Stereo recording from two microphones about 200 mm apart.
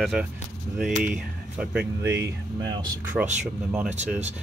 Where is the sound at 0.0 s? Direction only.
5° right (ahead or behind).